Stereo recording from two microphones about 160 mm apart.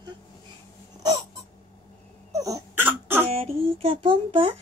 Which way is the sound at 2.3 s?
20° right (ahead or behind).